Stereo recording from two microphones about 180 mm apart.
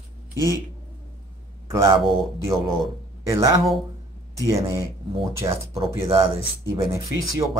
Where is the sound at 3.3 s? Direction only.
15° right (ahead or behind).